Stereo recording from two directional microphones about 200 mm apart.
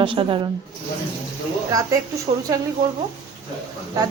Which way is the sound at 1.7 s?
15° right (ahead or behind).